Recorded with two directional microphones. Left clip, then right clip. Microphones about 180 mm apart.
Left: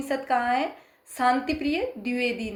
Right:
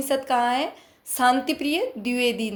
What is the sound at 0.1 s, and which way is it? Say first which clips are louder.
A woman's voice: right 2 dB; 50° right (ahead or behind).